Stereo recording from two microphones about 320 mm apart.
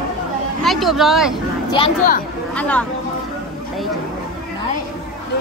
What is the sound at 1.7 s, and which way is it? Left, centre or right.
Speech, centre.